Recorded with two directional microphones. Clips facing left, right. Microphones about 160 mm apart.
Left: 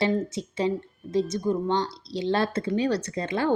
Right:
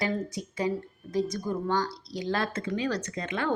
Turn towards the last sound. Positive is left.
turn(degrees=30)  # may be behind; listen again after turning